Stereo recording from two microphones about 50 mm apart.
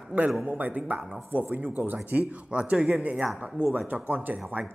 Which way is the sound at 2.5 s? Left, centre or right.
Right.